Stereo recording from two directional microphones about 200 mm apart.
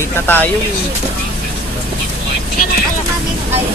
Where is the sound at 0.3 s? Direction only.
10° left (ahead or behind).